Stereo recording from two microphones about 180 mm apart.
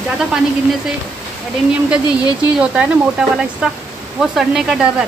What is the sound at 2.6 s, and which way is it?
Speech, 5° right (ahead or behind).